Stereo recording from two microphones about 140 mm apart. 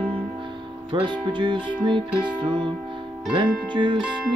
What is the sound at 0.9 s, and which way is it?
Music, 35° right (ahead or behind).